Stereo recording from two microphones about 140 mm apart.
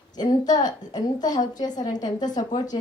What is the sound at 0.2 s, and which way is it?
A woman's voice, 30° left (ahead or behind).